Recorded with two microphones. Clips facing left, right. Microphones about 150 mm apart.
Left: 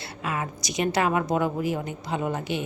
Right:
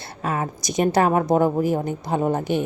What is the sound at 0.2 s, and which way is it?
A woman's voice, 40° right (ahead or behind).